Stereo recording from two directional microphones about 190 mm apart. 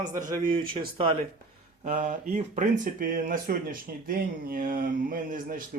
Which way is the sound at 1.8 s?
40° right (ahead or behind).